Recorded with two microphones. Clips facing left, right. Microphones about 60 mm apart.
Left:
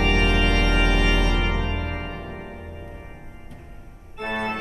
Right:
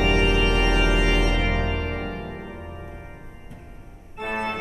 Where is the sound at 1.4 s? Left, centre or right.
Right.